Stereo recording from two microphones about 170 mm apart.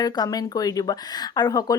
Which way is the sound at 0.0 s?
25° left (ahead or behind).